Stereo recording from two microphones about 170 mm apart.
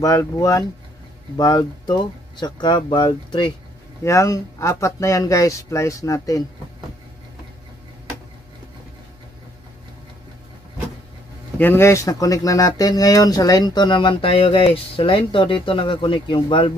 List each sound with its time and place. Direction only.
0.0 s speech: 20° left (ahead or behind)
4.0 s speech: 20° left (ahead or behind)
11.5 s speech: 10° left (ahead or behind); by 16.7 s 30° left (ahead or behind)